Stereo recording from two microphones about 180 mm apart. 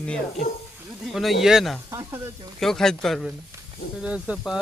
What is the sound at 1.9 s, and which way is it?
Speech, 15° right (ahead or behind).